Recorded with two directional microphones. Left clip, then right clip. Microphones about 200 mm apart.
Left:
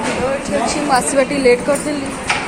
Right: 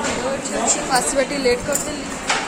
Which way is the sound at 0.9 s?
10° left (ahead or behind).